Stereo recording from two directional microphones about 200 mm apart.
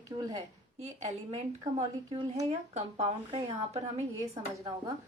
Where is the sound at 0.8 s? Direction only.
35° right (ahead or behind).